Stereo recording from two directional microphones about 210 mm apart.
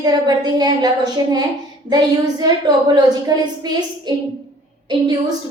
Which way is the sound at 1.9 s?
20° right (ahead or behind).